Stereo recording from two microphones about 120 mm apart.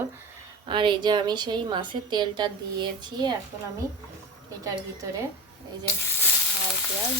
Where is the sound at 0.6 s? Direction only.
40° right (ahead or behind).